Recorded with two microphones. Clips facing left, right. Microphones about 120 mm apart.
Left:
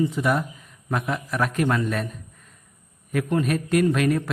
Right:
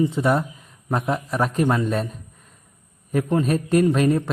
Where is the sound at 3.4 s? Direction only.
30° right (ahead or behind).